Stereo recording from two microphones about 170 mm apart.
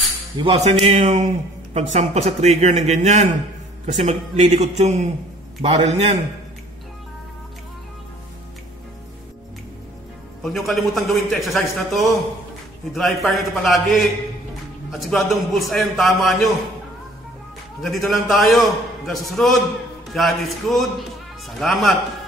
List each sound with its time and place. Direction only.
0.4 s speech: 25° right (ahead or behind)
0.8 s a man's voice: 40° right (ahead or behind)
10.4 s a man's voice: centre (ahead or behind)
17.8 s a man's voice: centre (ahead or behind)